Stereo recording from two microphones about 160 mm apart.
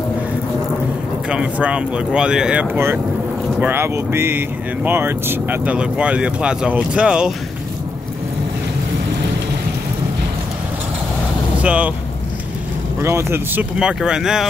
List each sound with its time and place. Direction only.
1.3 s speech: 5° right (ahead or behind)
11.6 s speech: 10° right (ahead or behind)
13.0 s speech: 15° right (ahead or behind)
13.7 s speech: 5° right (ahead or behind)